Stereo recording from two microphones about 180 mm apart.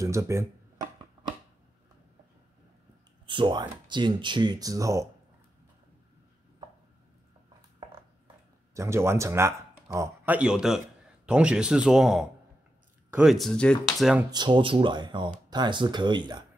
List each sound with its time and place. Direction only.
0.0 s speech: 15° right (ahead or behind)
3.3 s speech: 25° right (ahead or behind)
8.7 s speech: 15° right (ahead or behind)
14.3 s speech: 25° right (ahead or behind)